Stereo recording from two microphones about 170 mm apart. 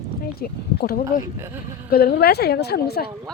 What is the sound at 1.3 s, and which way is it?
Speech, 15° right (ahead or behind).